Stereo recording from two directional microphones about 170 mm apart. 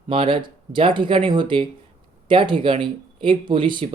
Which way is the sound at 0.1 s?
30° right (ahead or behind).